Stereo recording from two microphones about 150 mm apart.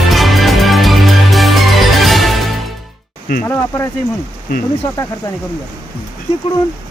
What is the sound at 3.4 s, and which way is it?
Speech, 20° left (ahead or behind).